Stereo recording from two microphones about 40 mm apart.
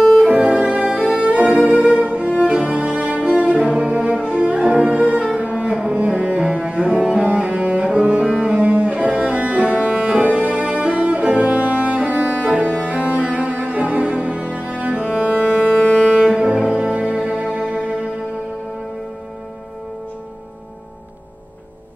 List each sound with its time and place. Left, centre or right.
0.3 s music: right
5.4 s cello: right
9.8 s music: right
10.2 s music: right
12.7 s cello: right
15.3 s ship: left
16.3 s music: right